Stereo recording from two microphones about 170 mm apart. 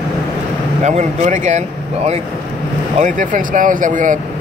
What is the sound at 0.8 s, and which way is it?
Speech, 45° right (ahead or behind).